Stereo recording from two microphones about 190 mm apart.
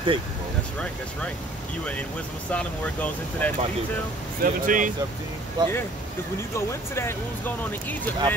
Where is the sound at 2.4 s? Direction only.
5° left (ahead or behind).